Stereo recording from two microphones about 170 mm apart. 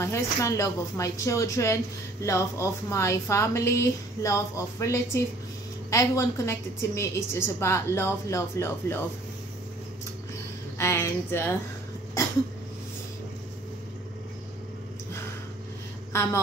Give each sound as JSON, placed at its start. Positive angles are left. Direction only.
{"t": 0.0, "sound": "a woman's voice", "side_deg": 15}
{"t": 10.8, "sound": "a woman's voice", "side_deg": 15}
{"t": 16.1, "sound": "speech", "side_deg": 15}